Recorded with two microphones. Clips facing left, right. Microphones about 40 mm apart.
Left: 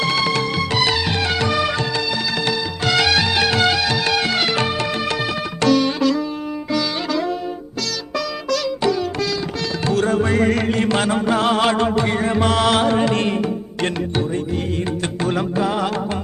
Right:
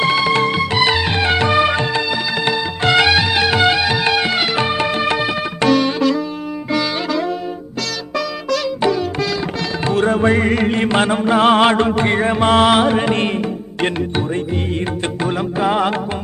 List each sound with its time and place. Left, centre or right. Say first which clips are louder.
0.0 s music: right 4 dB; centre
0.3 s music: right 5 dB; right
0.6 s music: right 3 dB; centre
8.1 s sitar: right 2 dB; right
11.4 s music: right 7 dB; right